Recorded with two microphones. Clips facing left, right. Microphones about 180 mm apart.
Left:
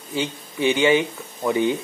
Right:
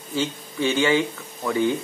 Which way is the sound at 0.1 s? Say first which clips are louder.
Even; 15° left (ahead or behind).